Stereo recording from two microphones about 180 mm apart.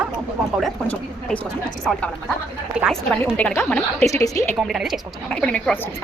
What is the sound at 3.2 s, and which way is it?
Speech, 10° left (ahead or behind).